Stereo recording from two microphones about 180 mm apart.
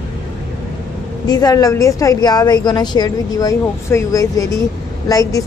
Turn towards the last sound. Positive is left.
turn(degrees=20)  # may be behind; listen again after turning